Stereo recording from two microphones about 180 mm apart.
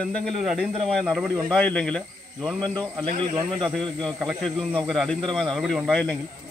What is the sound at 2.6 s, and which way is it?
A man's voice, 25° right (ahead or behind).